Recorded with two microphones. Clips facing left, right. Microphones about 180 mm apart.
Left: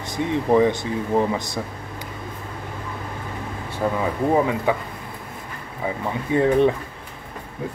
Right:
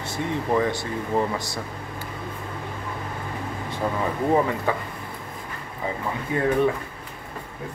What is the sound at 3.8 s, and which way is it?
Speech, 5° left (ahead or behind).